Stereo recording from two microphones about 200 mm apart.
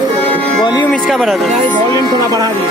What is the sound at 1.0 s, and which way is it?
Speech, centre (ahead or behind).